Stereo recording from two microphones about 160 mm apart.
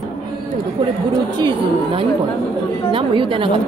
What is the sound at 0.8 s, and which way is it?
A woman's voice, 30° right (ahead or behind).